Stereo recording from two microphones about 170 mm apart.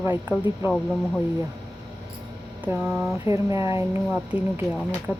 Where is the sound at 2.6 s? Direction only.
10° right (ahead or behind).